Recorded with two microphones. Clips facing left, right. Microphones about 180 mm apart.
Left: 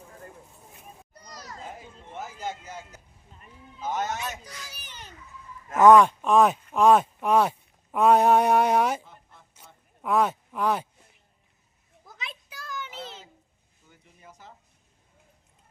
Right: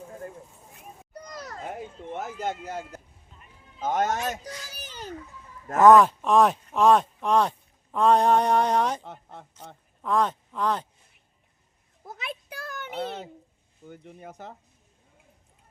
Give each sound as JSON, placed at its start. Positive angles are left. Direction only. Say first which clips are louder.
{"t": 1.1, "sound": "children playing", "louder": "right 6 dB", "side_deg": -60}
{"t": 3.8, "sound": "a man's voice", "louder": "right 4 dB", "side_deg": -50}
{"t": 5.8, "sound": "speech", "louder": "even", "side_deg": 0}
{"t": 9.0, "sound": "a sound", "louder": "right 10 dB", "side_deg": -65}
{"t": 10.0, "sound": "speech", "louder": "left 1 dB", "side_deg": 10}
{"t": 12.0, "sound": "a sound", "louder": "right 6 dB", "side_deg": -55}
{"t": 13.8, "sound": "speech", "louder": "right 11 dB", "side_deg": -60}